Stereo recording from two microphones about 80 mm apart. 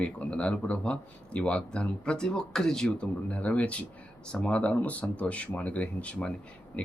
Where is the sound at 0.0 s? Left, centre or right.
Centre.